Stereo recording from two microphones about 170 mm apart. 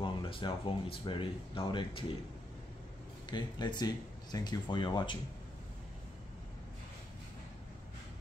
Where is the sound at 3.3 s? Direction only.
25° left (ahead or behind).